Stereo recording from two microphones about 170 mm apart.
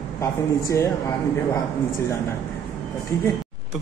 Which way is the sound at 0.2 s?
15° left (ahead or behind).